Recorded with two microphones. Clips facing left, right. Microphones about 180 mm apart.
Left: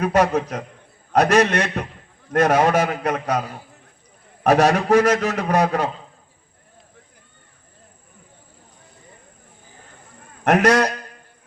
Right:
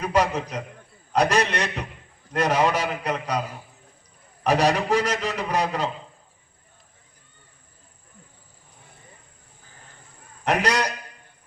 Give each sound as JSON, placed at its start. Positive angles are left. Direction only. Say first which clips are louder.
{"t": 0.0, "sound": "a man's voice", "louder": "left 5 dB", "side_deg": 55}
{"t": 10.4, "sound": "a man's voice", "louder": "left 7 dB", "side_deg": 50}